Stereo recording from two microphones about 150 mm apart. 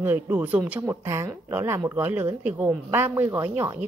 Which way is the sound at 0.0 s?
15° right (ahead or behind).